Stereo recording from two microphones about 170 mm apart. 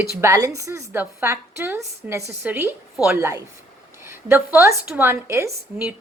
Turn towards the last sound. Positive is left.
turn(degrees=-15)  # may be behind; listen again after turning